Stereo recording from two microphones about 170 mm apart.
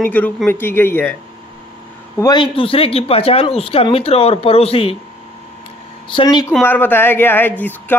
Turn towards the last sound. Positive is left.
turn(degrees=10)  # may be behind; listen again after turning